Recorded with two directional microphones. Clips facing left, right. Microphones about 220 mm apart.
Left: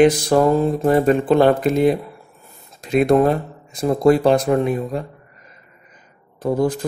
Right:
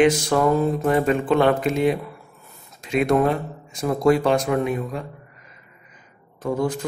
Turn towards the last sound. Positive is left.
turn(degrees=35)  # may be behind; listen again after turning